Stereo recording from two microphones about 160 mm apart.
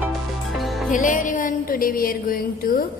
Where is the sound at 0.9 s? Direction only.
55° left (ahead or behind).